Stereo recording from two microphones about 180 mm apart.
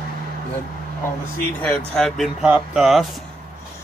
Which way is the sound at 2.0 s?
Centre (ahead or behind).